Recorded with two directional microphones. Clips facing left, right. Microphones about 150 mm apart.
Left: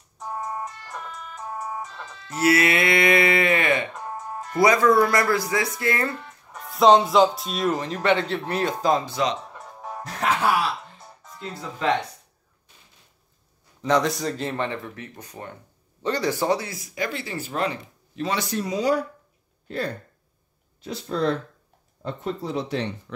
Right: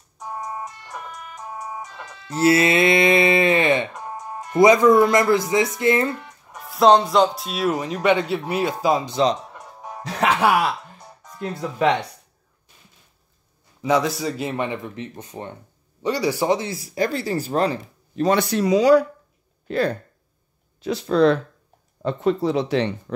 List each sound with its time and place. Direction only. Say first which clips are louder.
0.2 s siren: even; centre (ahead or behind)
2.3 s livestock: right 3 dB; 25° right (ahead or behind)
3.9 s music: right 1 dB; 10° right (ahead or behind)
4.6 s speech: right 4 dB; 20° right (ahead or behind)
6.1 s speech: right 1 dB; 5° right (ahead or behind)
9.1 s speech: right 5 dB; 35° right (ahead or behind)
9.5 s music: even; 5° right (ahead or behind)
10.0 s speech: right 4 dB; 85° right; by 10.7 s 65° right (ahead or behind)
13.8 s speech: right 1 dB; 5° right (ahead or behind); by 15.5 s 25° right (ahead or behind)
16.0 s speech: right 2 dB; 10° right (ahead or behind); by 18.4 s 40° right (ahead or behind)
18.4 s speech: right 6 dB; 80° right